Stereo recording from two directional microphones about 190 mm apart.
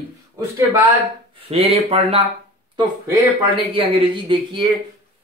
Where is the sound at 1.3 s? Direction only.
30° right (ahead or behind).